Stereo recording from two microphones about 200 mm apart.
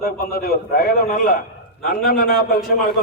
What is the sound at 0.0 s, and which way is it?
A man's voice, 50° left (ahead or behind).